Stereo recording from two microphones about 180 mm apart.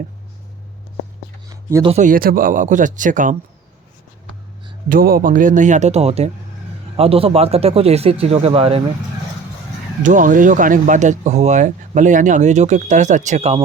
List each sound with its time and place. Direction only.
1.5 s a sound: 20° right (ahead or behind)
1.9 s speech: 45° right (ahead or behind)
4.9 s speech: 55° right (ahead or behind); by 8.8 s 30° right (ahead or behind)
10.0 s speech: 45° right (ahead or behind)